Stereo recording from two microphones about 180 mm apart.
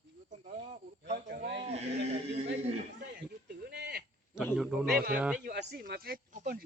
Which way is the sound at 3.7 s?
65° right (ahead or behind).